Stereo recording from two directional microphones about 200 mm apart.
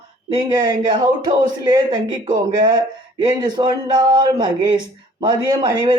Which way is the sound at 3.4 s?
20° right (ahead or behind).